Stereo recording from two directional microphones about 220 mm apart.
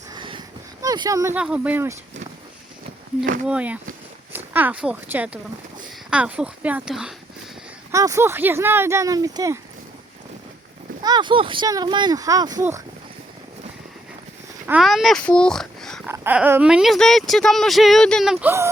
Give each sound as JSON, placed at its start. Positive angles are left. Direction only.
{"t": 0.1, "sound": "a sound", "side_deg": -20}
{"t": 3.4, "sound": "speech", "side_deg": -5}
{"t": 7.9, "sound": "speech", "side_deg": -15}
{"t": 11.0, "sound": "speech", "side_deg": -20}
{"t": 14.7, "sound": "speech", "side_deg": 0}
{"t": 16.0, "sound": "speech", "side_deg": -10}